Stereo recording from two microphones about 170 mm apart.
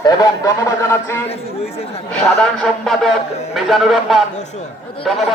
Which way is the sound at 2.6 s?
Centre (ahead or behind).